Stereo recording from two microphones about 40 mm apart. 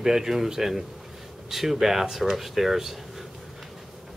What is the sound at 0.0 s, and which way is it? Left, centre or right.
Speech, centre.